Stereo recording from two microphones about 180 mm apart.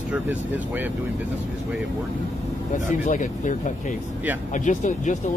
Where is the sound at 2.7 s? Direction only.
45° left (ahead or behind).